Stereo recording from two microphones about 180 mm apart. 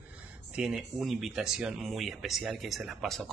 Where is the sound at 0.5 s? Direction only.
Centre (ahead or behind).